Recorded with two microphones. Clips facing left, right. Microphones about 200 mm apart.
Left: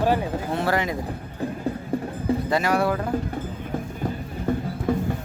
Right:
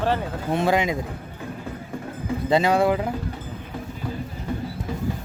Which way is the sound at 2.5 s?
20° right (ahead or behind).